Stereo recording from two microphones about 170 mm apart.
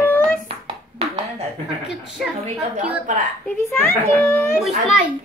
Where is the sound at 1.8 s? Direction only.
5° right (ahead or behind).